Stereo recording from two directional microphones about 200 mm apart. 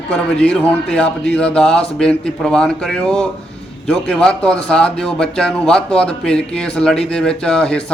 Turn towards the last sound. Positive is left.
turn(degrees=5)  # may be behind; listen again after turning